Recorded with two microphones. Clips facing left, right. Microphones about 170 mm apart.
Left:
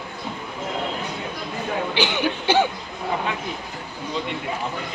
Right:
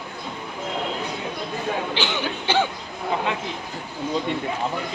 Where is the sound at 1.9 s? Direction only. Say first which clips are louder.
Left 3 dB; 15° left (ahead or behind).